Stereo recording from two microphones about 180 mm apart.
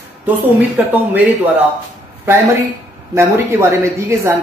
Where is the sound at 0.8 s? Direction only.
10° right (ahead or behind).